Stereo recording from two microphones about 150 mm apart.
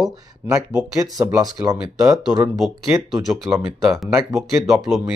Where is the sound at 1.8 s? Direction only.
5° right (ahead or behind).